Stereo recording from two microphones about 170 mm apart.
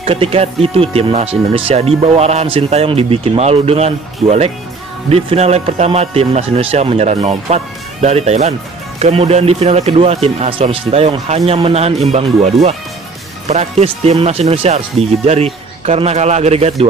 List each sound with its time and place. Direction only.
0.0 s speech: 35° right (ahead or behind)
13.5 s speech: 40° right (ahead or behind)